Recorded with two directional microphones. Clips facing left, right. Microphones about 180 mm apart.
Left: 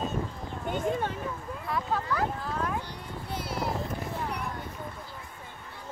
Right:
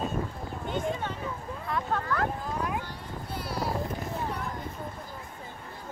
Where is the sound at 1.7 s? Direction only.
Centre (ahead or behind).